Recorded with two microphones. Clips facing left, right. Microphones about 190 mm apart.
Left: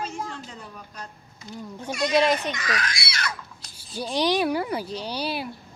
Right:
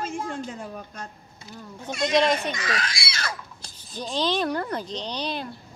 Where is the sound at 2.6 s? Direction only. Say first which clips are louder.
Even; 30° right (ahead or behind).